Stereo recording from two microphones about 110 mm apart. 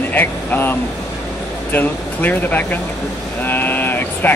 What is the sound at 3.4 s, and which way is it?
Vehicle, 20° left (ahead or behind).